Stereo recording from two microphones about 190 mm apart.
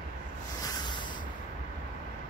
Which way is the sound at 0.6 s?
20° left (ahead or behind).